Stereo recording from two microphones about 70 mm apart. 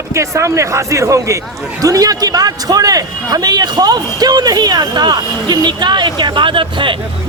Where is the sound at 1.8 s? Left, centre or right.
Right.